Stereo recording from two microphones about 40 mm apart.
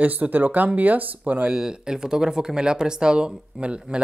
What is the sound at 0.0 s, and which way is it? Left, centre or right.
Speech, right.